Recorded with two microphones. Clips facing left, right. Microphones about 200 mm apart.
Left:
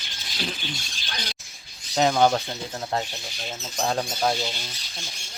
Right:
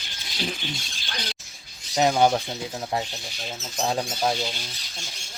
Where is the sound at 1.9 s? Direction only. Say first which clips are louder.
Even; 10° right (ahead or behind).